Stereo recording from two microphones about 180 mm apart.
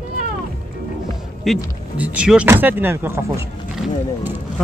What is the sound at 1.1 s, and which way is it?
Music, centre (ahead or behind).